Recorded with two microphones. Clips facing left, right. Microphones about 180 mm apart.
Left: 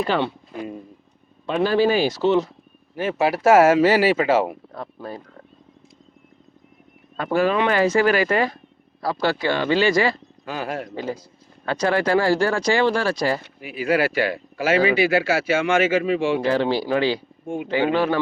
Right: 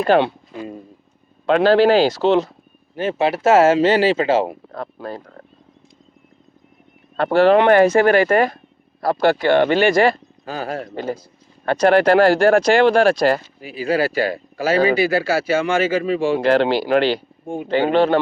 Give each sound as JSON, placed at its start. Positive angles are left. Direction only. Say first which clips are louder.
{"t": 0.0, "sound": "speech", "louder": "right 6 dB", "side_deg": -55}
{"t": 1.5, "sound": "speech", "louder": "right 6 dB", "side_deg": -85}
{"t": 2.9, "sound": "speech", "louder": "right 2 dB", "side_deg": -25}
{"t": 4.7, "sound": "speech", "louder": "right 4 dB", "side_deg": -75}
{"t": 7.2, "sound": "speech", "louder": "right 7 dB", "side_deg": -75}
{"t": 10.4, "sound": "speech", "louder": "right 2 dB", "side_deg": -35}
{"t": 10.9, "sound": "speech", "louder": "right 3 dB", "side_deg": -50}
{"t": 13.6, "sound": "speech", "louder": "right 1 dB", "side_deg": -35}
{"t": 16.4, "sound": "speech", "louder": "right 4 dB", "side_deg": -75}